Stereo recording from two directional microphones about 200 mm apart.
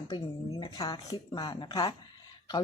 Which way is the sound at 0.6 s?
20° left (ahead or behind).